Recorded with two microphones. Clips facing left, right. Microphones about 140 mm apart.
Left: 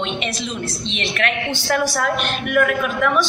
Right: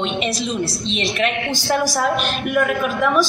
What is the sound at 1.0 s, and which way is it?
Speech, 15° right (ahead or behind).